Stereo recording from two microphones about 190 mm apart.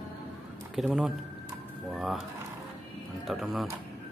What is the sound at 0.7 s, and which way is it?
Speech, centre (ahead or behind).